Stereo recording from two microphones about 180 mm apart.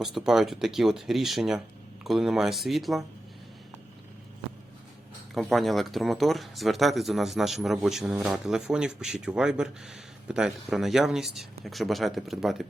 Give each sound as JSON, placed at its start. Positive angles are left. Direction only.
{"t": 0.0, "sound": "speech", "side_deg": 0}
{"t": 5.3, "sound": "speech", "side_deg": 0}